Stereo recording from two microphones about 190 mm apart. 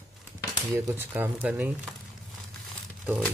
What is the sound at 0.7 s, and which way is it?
Speech, 10° right (ahead or behind).